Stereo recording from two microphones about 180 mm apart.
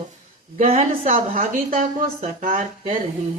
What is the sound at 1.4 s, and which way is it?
Speech, 50° right (ahead or behind).